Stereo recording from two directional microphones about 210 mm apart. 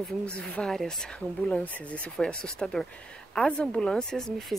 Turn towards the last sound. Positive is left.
turn(degrees=0)  # may be behind; listen again after turning